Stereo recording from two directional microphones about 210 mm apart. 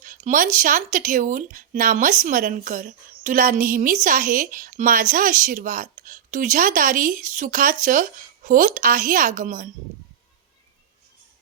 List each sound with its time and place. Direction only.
0.0 s a woman's voice: 40° right (ahead or behind)